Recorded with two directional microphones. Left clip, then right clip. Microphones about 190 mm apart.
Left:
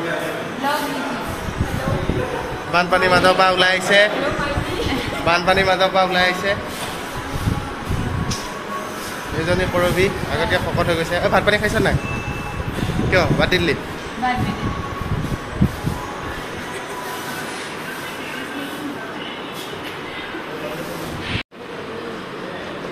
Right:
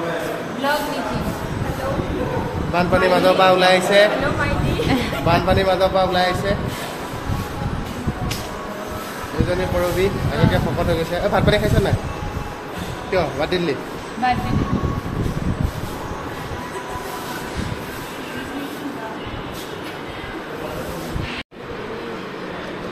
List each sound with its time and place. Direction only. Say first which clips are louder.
2.7 s speech: left 1 dB; centre (ahead or behind)
5.2 s a man's voice: left 2 dB; 10° right (ahead or behind)
9.5 s speech: left 3 dB; centre (ahead or behind)
13.1 s speech: left 3 dB; centre (ahead or behind)